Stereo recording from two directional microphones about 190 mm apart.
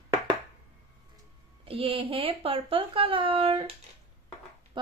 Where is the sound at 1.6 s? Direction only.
30° right (ahead or behind).